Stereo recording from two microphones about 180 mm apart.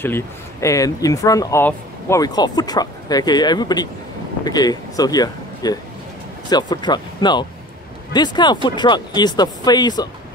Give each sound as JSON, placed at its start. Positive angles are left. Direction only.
{"t": 0.0, "sound": "speech", "side_deg": 15}